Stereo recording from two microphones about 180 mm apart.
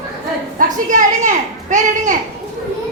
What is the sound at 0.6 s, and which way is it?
Speech, 45° right (ahead or behind).